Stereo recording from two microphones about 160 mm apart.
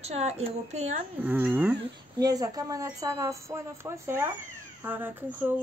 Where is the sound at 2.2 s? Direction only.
25° right (ahead or behind).